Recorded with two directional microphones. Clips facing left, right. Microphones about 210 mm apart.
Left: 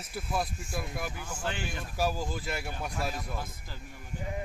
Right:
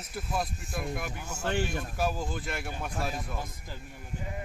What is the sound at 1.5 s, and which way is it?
Speech, 45° right (ahead or behind).